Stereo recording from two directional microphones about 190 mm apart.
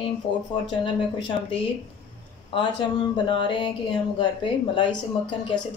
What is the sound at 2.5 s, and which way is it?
A woman's voice, 25° left (ahead or behind).